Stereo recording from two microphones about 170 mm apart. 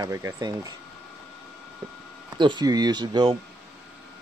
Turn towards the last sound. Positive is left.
turn(degrees=-25)  # may be behind; listen again after turning